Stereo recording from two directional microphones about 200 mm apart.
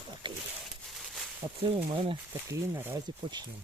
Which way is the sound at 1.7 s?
25° right (ahead or behind).